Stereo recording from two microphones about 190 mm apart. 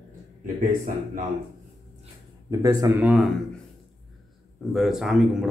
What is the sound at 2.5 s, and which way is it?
Speech, 15° right (ahead or behind).